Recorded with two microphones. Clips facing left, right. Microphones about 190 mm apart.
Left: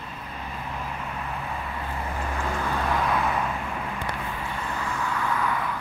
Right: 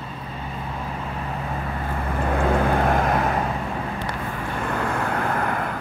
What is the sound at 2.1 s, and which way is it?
Vehicle, 55° right (ahead or behind).